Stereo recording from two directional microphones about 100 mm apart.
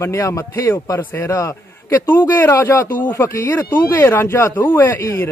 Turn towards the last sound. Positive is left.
turn(degrees=25)  # may be behind; listen again after turning